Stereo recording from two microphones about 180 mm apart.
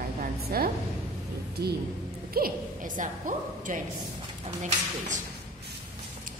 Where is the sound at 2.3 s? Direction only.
55° right (ahead or behind).